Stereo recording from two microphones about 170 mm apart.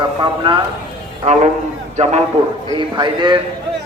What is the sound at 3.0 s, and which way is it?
Speech, 25° right (ahead or behind).